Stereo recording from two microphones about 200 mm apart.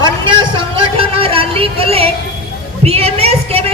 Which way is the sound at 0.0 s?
25° right (ahead or behind).